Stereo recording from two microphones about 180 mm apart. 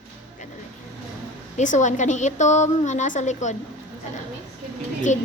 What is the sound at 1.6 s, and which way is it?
A woman's voice, 45° left (ahead or behind).